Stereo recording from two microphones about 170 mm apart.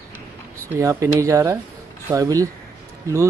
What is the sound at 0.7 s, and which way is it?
Speech, 20° right (ahead or behind).